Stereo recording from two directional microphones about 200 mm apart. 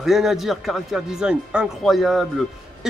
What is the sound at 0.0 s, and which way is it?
Speech, centre (ahead or behind).